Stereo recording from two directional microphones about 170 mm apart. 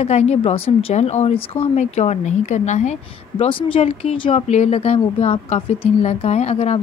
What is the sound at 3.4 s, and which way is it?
Speech, 35° left (ahead or behind).